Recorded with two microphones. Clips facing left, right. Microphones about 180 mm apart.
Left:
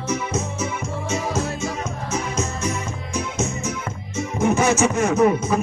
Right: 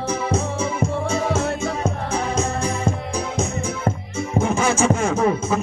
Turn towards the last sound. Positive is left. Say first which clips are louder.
# left 2 dB
turn(degrees=-30)  # may be behind; listen again after turning